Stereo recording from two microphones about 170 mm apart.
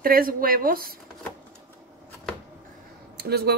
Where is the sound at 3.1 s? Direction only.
70° right (ahead or behind).